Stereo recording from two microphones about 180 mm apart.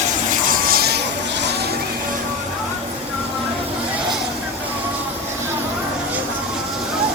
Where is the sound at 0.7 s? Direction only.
60° right (ahead or behind).